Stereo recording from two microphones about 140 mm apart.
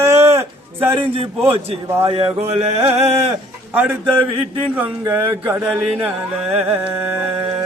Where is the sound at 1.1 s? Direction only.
45° right (ahead or behind).